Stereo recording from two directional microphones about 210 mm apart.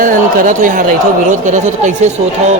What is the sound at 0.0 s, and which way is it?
Speech, 40° right (ahead or behind).